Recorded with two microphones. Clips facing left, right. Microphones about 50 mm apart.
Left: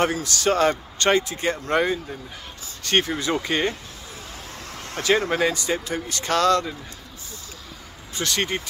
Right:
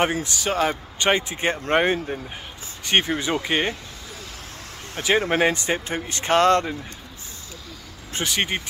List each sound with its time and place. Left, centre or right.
0.0 s speech: right
0.4 s a man's voice: centre
1.3 s speech: right
2.8 s a man's voice: centre
4.9 s speech: centre
5.3 s speech: right
8.2 s speech: centre